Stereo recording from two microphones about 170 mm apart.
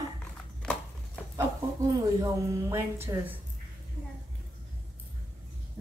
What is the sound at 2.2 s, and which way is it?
A woman's voice, 15° right (ahead or behind).